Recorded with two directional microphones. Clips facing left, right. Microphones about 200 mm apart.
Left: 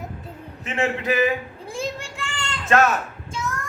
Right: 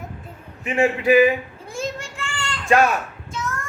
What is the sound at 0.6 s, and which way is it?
Speech, 15° right (ahead or behind).